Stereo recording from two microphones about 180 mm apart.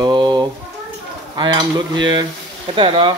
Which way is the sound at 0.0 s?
25° right (ahead or behind).